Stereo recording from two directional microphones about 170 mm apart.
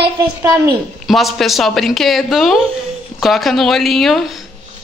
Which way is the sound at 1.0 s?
Centre (ahead or behind).